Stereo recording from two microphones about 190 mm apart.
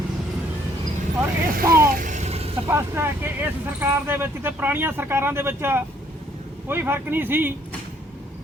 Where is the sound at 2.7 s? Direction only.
15° right (ahead or behind).